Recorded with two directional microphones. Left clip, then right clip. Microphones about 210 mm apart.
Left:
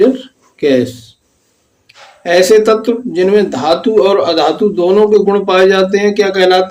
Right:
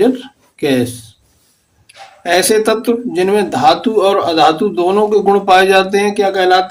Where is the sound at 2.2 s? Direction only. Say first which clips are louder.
Left 4 dB; 20° right (ahead or behind).